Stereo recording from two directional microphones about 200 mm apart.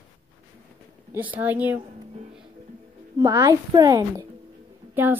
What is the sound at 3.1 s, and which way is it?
A woman's voice, 15° right (ahead or behind).